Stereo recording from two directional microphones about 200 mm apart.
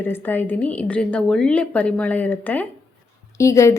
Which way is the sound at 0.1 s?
10° left (ahead or behind).